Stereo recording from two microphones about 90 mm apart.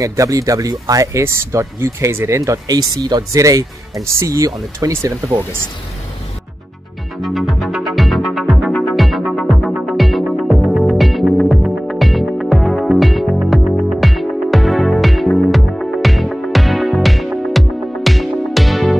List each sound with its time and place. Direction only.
0.0 s speech: 40° right (ahead or behind)
7.2 s music: centre (ahead or behind)